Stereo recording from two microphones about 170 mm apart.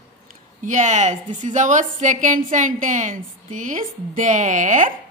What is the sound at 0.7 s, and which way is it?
A woman's voice, 45° right (ahead or behind).